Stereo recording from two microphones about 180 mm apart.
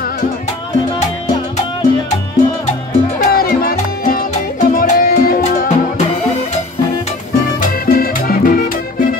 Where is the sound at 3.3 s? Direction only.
55° left (ahead or behind).